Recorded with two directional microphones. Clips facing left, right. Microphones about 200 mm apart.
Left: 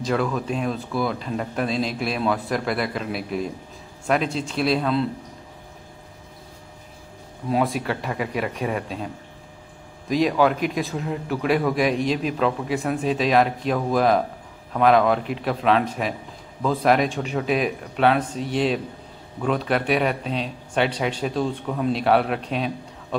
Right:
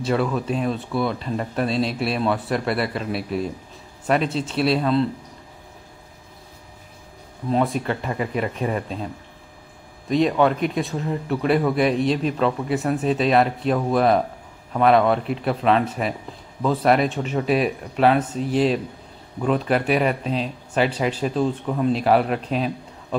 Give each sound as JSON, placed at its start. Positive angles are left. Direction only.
{"t": 0.0, "sound": "a man's voice", "side_deg": 0}
{"t": 7.4, "sound": "a man's voice", "side_deg": 5}